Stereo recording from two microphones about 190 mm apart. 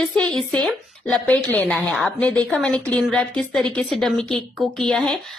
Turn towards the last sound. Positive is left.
turn(degrees=5)  # may be behind; listen again after turning